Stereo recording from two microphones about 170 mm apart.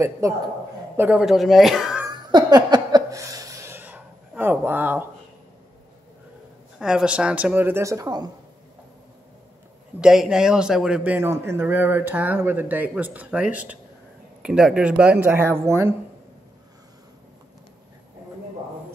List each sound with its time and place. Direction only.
0.9 s speech: 10° right (ahead or behind)
2.0 s a sound: 25° right (ahead or behind)
6.8 s a man's voice: 5° right (ahead or behind); by 8.3 s 20° right (ahead or behind)
9.9 s a man's voice: 5° right (ahead or behind)